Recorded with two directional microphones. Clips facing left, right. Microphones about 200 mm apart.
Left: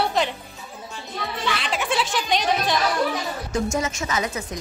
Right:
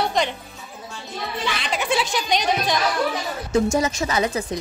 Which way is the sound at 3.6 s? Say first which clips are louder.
Right 4 dB; 35° right (ahead or behind).